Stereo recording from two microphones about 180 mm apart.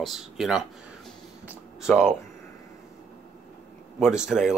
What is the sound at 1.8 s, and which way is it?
Speech, 5° right (ahead or behind).